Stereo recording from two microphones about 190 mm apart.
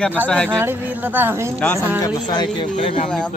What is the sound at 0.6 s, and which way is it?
Speech, 10° right (ahead or behind).